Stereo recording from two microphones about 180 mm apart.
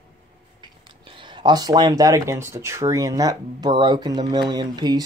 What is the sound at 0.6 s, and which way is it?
Speech, 25° right (ahead or behind).